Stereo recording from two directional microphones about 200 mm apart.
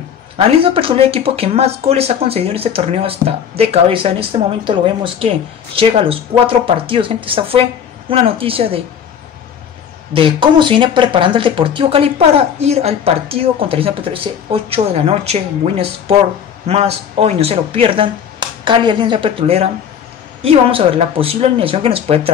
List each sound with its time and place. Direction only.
0.4 s speech: 30° right (ahead or behind)
10.1 s speech: 25° right (ahead or behind)